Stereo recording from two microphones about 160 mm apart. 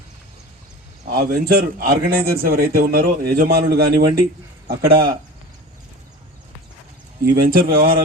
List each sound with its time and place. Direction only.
1.1 s a man's voice: 65° right (ahead or behind)
7.4 s a man's voice: 65° right (ahead or behind)